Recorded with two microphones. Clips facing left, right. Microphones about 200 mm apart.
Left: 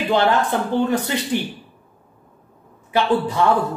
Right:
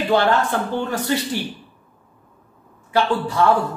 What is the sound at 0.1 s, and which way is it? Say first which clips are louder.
A woman's voice: even; 20° left (ahead or behind).